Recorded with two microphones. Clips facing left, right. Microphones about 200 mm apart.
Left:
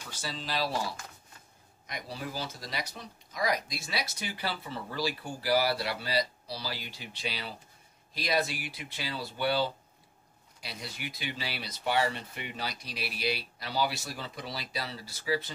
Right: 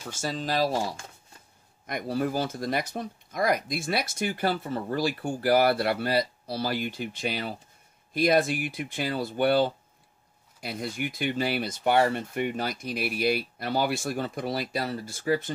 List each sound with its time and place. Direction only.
0.0 s speech: 45° right (ahead or behind)
1.9 s speech: 55° right (ahead or behind)